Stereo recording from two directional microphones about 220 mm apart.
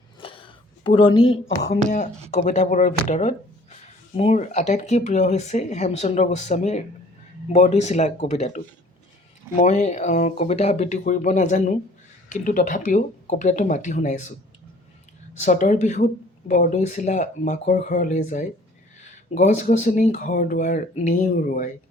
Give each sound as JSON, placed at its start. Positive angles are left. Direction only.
{"t": 0.2, "sound": "a sound", "side_deg": 25}
{"t": 1.6, "sound": "speech", "side_deg": 40}
{"t": 15.4, "sound": "speech", "side_deg": 35}